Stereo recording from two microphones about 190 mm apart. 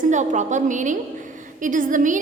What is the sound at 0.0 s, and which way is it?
A woman's voice, 40° right (ahead or behind).